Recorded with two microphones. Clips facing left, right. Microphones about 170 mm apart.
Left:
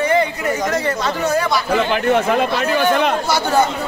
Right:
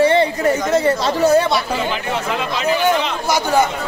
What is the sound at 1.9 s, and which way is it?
Speech, 55° left (ahead or behind).